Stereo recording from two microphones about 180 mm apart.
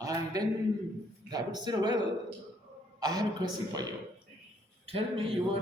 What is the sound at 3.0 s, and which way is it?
Speech, 20° right (ahead or behind).